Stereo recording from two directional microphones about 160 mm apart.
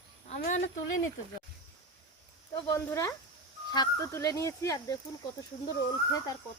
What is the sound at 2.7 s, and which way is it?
Speech, 20° left (ahead or behind).